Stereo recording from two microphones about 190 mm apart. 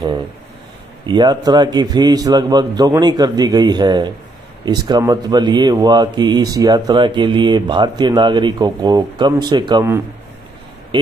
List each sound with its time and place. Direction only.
1.0 s speech: 20° right (ahead or behind)